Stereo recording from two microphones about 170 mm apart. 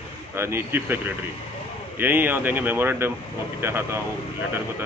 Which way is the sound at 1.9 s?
10° right (ahead or behind).